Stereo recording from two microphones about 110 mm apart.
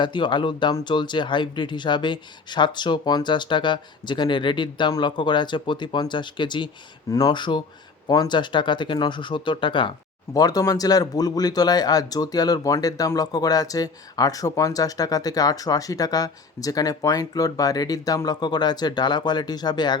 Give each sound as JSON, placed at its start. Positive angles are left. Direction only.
{"t": 0.0, "sound": "speech", "side_deg": 45}
{"t": 10.3, "sound": "speech", "side_deg": 35}